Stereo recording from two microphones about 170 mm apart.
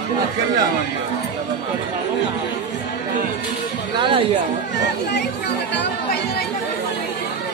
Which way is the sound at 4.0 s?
30° right (ahead or behind).